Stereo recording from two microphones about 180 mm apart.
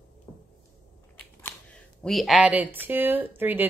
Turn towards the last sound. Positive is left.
turn(degrees=-10)  # may be behind; listen again after turning